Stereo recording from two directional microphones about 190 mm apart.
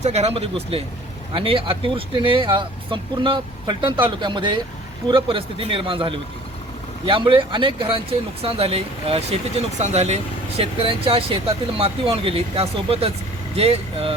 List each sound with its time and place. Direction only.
0.0 s speech: 35° right (ahead or behind)